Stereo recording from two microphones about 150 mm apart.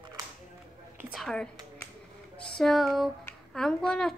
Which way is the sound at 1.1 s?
5° left (ahead or behind).